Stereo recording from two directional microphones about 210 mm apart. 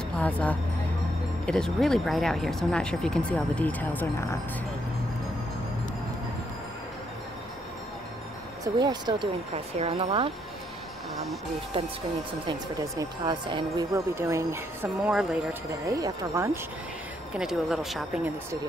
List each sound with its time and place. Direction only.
0.2 s speech: 5° left (ahead or behind)
8.7 s speech: 20° right (ahead or behind)
12.4 s speech: 20° right (ahead or behind)
17.3 s speech: 5° right (ahead or behind)